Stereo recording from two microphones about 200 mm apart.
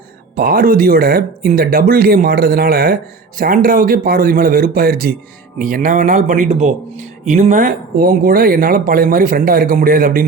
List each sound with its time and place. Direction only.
0.3 s speech: 45° right (ahead or behind)